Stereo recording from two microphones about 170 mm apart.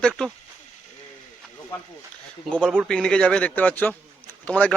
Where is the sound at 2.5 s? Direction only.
5° left (ahead or behind).